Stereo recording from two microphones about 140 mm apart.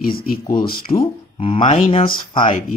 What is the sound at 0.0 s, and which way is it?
Speech, 90° left.